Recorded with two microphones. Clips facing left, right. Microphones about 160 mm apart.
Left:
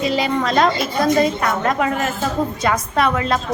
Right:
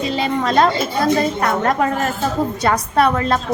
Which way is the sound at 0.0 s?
30° right (ahead or behind).